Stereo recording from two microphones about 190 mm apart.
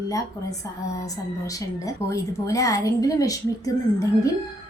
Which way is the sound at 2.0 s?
15° left (ahead or behind).